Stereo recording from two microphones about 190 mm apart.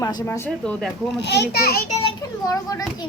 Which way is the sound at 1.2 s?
60° left (ahead or behind).